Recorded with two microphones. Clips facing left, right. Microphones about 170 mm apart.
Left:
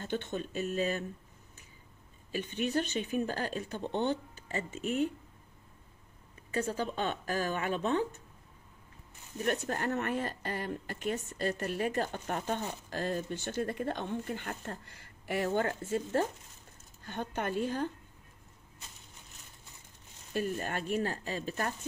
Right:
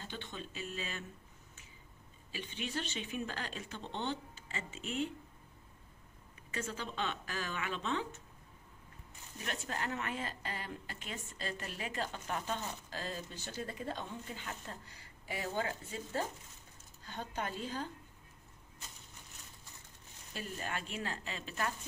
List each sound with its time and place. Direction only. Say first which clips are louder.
0.0 s a woman's voice: left 10 dB; 50° left (ahead or behind)
2.3 s a woman's voice: left 9 dB; 45° left (ahead or behind)
6.5 s a woman's voice: left 8 dB; 35° left (ahead or behind)
9.4 s a woman's voice: left 8 dB; 50° left (ahead or behind)
20.3 s a woman's voice: left 8 dB; 50° left (ahead or behind)